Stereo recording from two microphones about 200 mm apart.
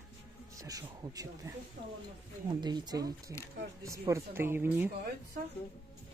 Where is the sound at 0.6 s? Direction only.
20° right (ahead or behind).